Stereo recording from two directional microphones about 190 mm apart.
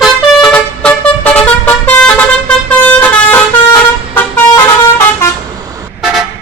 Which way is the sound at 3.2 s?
10° left (ahead or behind).